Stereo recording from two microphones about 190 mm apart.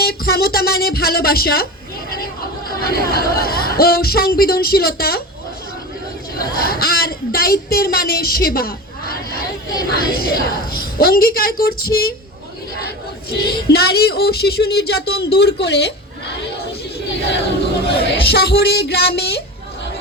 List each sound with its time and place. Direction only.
0.0 s speech: 55° left (ahead or behind)
6.5 s a woman's voice: 50° left (ahead or behind)
13.3 s speech: 55° left (ahead or behind)
18.1 s speech: 55° left (ahead or behind)